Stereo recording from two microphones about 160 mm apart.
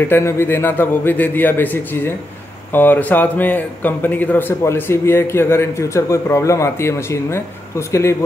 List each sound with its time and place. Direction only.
0.1 s speech: 15° left (ahead or behind)